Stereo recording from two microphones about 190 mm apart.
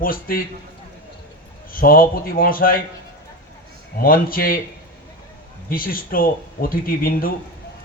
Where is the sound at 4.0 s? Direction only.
50° left (ahead or behind).